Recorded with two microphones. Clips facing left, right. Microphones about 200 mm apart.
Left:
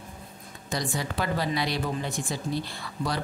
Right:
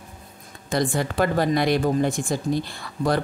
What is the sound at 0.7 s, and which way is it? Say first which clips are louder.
Speech: right 7 dB; 55° right (ahead or behind).